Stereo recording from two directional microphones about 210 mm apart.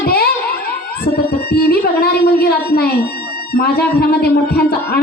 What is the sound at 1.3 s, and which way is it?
A man's voice, 50° left (ahead or behind).